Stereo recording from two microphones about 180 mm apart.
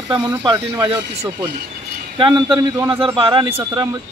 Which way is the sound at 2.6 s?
15° right (ahead or behind).